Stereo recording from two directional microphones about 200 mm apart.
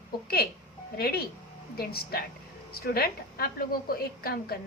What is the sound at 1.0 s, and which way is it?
A woman's voice, 50° left (ahead or behind).